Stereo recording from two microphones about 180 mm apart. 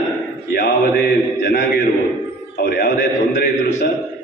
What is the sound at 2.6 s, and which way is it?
Speech, 60° left (ahead or behind).